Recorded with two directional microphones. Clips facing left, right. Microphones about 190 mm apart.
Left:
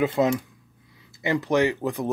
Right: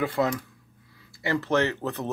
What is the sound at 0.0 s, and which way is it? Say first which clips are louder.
Speech: left 4 dB; 20° left (ahead or behind).